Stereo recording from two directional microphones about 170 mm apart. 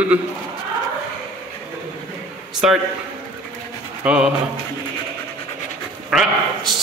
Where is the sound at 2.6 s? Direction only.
5° right (ahead or behind).